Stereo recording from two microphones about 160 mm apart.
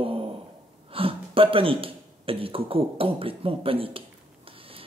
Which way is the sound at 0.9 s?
35° right (ahead or behind).